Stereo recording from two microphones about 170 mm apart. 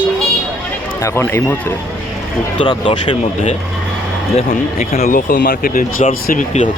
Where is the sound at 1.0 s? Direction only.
15° left (ahead or behind).